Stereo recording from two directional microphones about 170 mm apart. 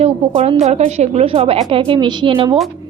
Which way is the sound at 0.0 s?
35° right (ahead or behind).